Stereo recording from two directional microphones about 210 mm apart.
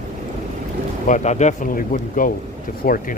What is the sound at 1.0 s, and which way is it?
Speech, 35° left (ahead or behind).